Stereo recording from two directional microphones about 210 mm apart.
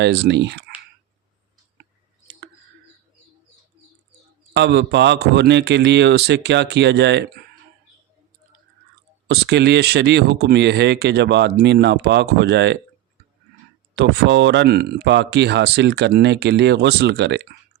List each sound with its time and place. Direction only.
0.0 s a man's voice: 55° right (ahead or behind)
4.5 s a man's voice: 55° right (ahead or behind)
9.2 s speech: 50° right (ahead or behind)
13.9 s speech: 55° right (ahead or behind)